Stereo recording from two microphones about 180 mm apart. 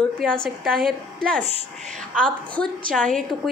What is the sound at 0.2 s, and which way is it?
A woman's voice, 5° left (ahead or behind).